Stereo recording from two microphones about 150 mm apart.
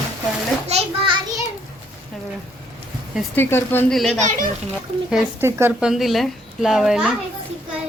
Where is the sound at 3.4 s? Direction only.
15° left (ahead or behind).